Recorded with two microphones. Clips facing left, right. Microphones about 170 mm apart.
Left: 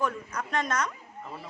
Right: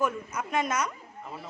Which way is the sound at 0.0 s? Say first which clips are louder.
Right 1 dB; 5° right (ahead or behind).